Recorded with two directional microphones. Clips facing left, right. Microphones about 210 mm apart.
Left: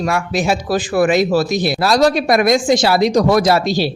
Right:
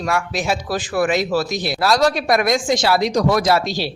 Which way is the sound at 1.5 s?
55° left (ahead or behind).